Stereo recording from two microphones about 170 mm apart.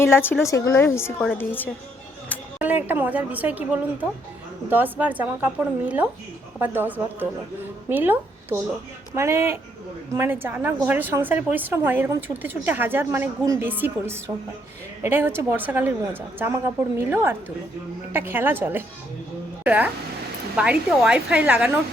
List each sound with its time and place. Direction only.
0.0 s a woman's voice: 15° left (ahead or behind)
2.6 s a woman's voice: 10° right (ahead or behind)
17.0 s a woman's voice: 15° right (ahead or behind)